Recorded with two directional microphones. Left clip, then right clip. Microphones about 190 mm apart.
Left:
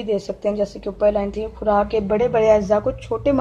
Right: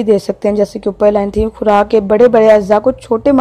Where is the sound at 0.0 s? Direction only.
45° right (ahead or behind).